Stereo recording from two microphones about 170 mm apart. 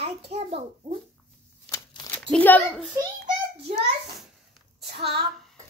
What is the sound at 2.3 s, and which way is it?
Speech, 10° left (ahead or behind).